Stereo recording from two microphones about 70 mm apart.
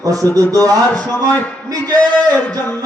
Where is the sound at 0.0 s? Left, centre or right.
Right.